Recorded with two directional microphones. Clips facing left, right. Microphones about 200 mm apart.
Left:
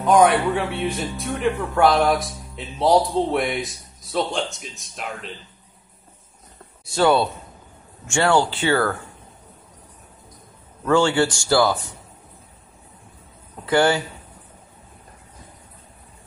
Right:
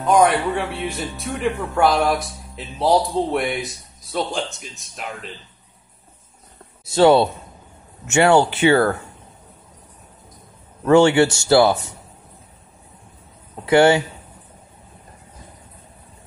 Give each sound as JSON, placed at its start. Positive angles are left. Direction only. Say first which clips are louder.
{"t": 0.0, "sound": "speech", "louder": "even", "side_deg": 0}
{"t": 6.9, "sound": "speech", "louder": "right 5 dB", "side_deg": -25}
{"t": 10.9, "sound": "speech", "louder": "right 5 dB", "side_deg": -20}
{"t": 13.7, "sound": "speech", "louder": "right 5 dB", "side_deg": -20}